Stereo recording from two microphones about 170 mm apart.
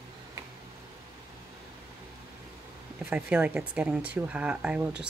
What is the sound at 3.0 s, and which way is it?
Speech, 10° right (ahead or behind).